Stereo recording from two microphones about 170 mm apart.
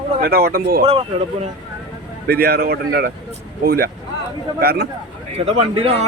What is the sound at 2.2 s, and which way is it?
A man's voice, 65° right (ahead or behind).